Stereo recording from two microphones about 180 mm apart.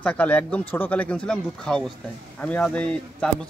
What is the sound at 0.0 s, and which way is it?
Speech, 10° left (ahead or behind).